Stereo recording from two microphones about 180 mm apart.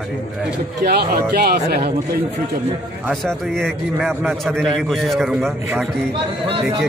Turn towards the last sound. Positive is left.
turn(degrees=0)  # may be behind; listen again after turning